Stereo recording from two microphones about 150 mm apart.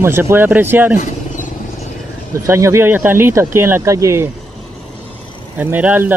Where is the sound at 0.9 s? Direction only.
55° left (ahead or behind).